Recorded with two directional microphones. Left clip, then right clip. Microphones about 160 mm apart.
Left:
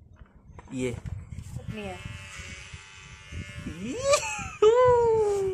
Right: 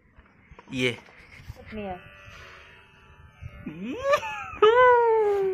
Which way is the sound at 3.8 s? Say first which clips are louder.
Even; 10° left (ahead or behind).